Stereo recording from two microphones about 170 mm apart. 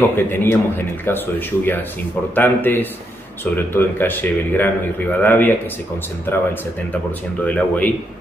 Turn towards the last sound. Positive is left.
turn(degrees=10)  # may be behind; listen again after turning